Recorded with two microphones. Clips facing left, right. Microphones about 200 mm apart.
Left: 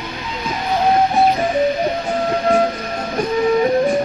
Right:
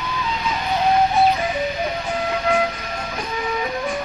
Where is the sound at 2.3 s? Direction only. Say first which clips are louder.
Left 5 dB; 40° left (ahead or behind).